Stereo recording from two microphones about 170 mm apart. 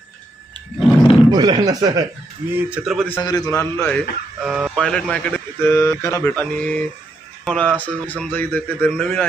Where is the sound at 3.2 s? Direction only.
20° left (ahead or behind).